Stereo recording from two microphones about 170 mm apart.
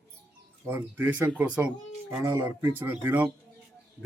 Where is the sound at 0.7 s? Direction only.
10° right (ahead or behind).